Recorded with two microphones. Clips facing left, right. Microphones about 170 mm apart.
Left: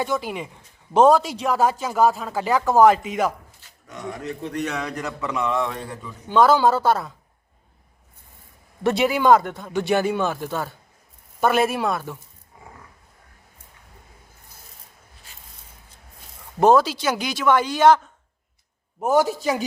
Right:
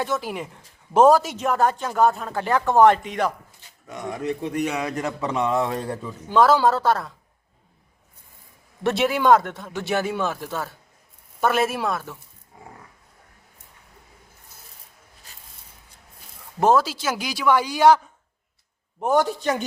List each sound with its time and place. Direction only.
0.0 s speech: centre (ahead or behind)
3.6 s a sound: 15° right (ahead or behind)
3.9 s a man's voice: 15° right (ahead or behind)
4.9 s a man's voice: 20° right (ahead or behind)
6.2 s speech: centre (ahead or behind)
8.8 s speech: centre (ahead or behind)
16.6 s speech: 5° right (ahead or behind)
18.9 s speech: 5° left (ahead or behind)